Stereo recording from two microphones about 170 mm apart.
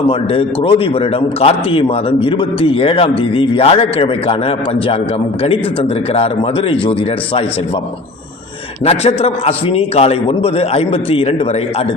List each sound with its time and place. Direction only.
0.1 s a man's voice: 35° left (ahead or behind)
8.8 s a man's voice: 35° left (ahead or behind)